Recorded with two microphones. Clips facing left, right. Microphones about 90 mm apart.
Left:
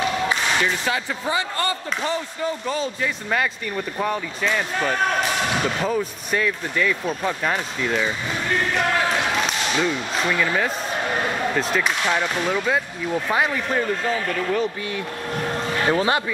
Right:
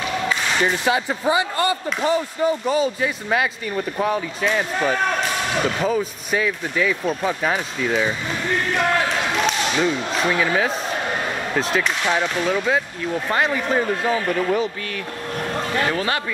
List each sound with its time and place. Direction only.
0.8 s speech: 15° right (ahead or behind)
9.8 s speech: 5° right (ahead or behind)
15.9 s speech: 20° left (ahead or behind)